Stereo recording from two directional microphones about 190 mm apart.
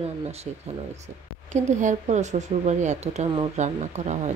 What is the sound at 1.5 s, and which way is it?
Speech, 40° right (ahead or behind).